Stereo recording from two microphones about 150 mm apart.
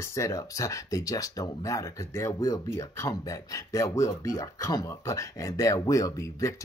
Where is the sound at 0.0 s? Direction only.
20° left (ahead or behind).